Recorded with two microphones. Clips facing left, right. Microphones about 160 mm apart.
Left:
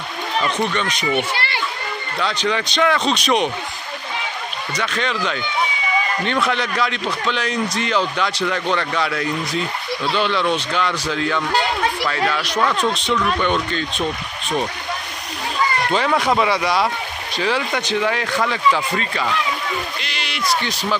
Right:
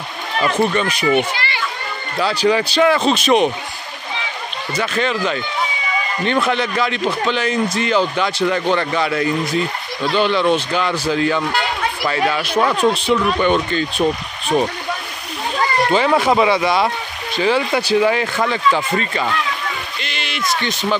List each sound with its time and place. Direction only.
0.4 s speech: 5° right (ahead or behind)
2.1 s speech: 5° right (ahead or behind)
4.7 s speech: 5° right (ahead or behind)
12.5 s speech: 25° right (ahead or behind)
13.1 s speech: 5° right (ahead or behind)
15.9 s speech: centre (ahead or behind)
20.0 s a sound: centre (ahead or behind)
20.6 s speech: centre (ahead or behind)